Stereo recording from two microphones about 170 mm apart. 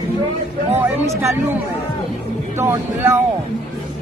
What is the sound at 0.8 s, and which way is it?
Speech, 15° right (ahead or behind).